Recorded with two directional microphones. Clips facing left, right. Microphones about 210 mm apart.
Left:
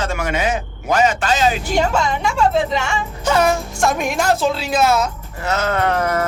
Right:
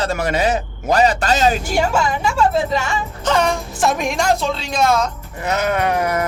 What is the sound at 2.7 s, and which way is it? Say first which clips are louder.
Speech: even; centre (ahead or behind).